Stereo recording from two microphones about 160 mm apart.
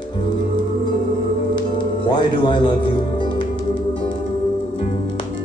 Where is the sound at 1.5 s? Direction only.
30° left (ahead or behind).